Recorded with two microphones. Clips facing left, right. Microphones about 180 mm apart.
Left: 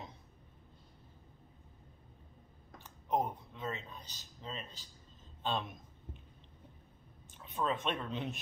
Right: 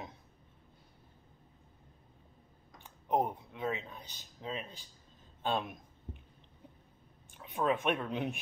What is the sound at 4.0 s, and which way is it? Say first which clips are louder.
Speech: right 2 dB; 60° right (ahead or behind).